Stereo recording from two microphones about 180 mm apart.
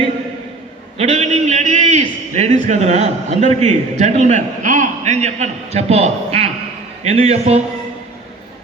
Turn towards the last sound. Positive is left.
turn(degrees=-35)  # may be behind; listen again after turning